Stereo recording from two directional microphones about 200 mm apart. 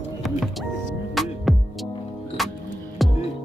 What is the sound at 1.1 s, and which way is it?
Music, centre (ahead or behind).